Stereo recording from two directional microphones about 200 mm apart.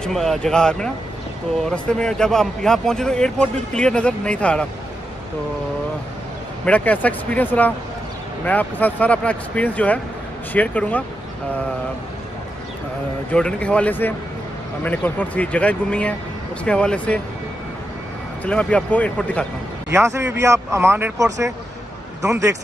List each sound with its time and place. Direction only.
0.0 s a man's voice: centre (ahead or behind)
6.6 s speech: 5° left (ahead or behind)
13.3 s a man's voice: 5° left (ahead or behind)
18.4 s a man's voice: 5° left (ahead or behind)
19.9 s a man's voice: 15° right (ahead or behind)